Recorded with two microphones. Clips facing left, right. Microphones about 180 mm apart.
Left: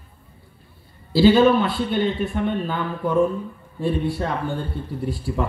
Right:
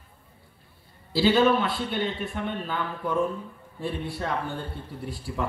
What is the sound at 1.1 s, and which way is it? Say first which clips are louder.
Speech: left 6 dB; 35° left (ahead or behind).